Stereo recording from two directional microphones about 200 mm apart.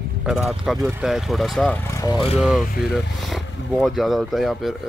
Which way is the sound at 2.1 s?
Centre (ahead or behind).